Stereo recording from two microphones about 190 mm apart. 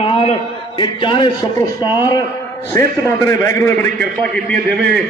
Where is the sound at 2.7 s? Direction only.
15° left (ahead or behind).